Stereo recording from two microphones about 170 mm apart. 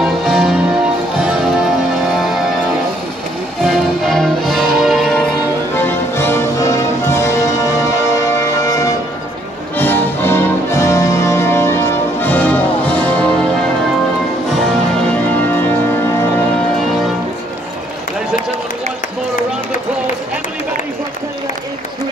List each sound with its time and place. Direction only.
0.0 s music: 5° right (ahead or behind)
3.6 s music: centre (ahead or behind)
5.8 s music: 15° left (ahead or behind)